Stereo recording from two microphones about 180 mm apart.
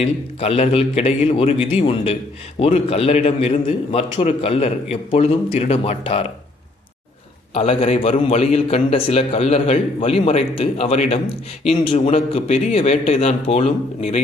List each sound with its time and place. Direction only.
0.0 s a man's voice: 35° left (ahead or behind)
7.5 s a man's voice: 35° left (ahead or behind)